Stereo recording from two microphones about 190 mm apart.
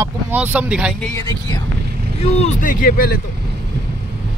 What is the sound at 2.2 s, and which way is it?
Speech, 35° left (ahead or behind).